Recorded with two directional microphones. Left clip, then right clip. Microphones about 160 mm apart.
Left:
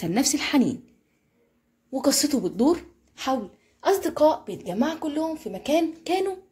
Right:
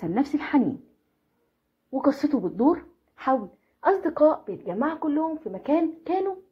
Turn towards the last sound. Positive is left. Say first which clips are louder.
# left 1 dB
turn(degrees=5)  # may be behind; listen again after turning